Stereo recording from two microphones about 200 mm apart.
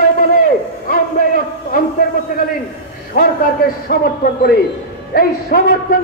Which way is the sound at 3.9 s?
50° left (ahead or behind).